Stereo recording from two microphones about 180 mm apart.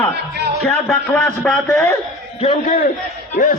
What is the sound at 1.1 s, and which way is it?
Speech, 15° left (ahead or behind).